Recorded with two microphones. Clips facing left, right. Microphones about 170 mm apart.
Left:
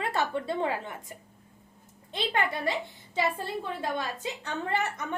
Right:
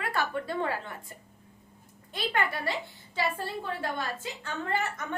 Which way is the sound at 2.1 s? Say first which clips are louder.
Left 1 dB; 20° left (ahead or behind).